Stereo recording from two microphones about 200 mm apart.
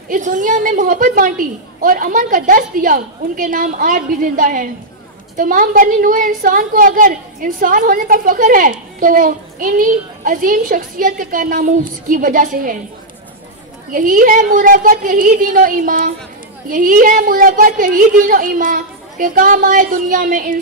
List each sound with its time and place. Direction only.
0.1 s a woman's voice: 40° right (ahead or behind)
13.9 s a woman's voice: 45° right (ahead or behind)